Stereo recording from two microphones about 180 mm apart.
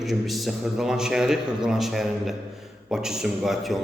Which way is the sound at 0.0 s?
Centre (ahead or behind).